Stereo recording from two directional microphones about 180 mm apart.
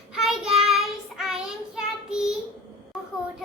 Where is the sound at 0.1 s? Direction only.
Centre (ahead or behind).